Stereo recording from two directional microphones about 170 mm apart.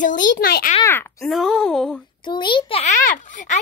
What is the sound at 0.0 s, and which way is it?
Speech, 50° left (ahead or behind).